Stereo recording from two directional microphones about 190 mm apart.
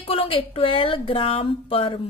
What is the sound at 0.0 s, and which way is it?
Speech, 30° left (ahead or behind).